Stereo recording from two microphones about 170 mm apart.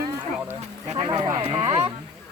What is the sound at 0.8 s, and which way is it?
Speech, 40° right (ahead or behind).